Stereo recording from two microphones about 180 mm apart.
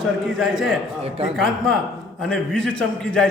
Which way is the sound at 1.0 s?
35° right (ahead or behind).